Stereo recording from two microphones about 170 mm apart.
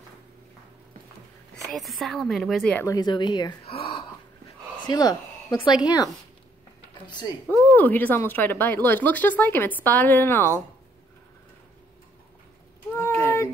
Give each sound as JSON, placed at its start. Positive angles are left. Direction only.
{"t": 1.5, "sound": "a woman's voice", "side_deg": 0}
{"t": 2.8, "sound": "speech", "side_deg": 20}
{"t": 4.8, "sound": "speech", "side_deg": 25}
{"t": 7.4, "sound": "speech", "side_deg": 10}
{"t": 12.9, "sound": "a sound", "side_deg": 15}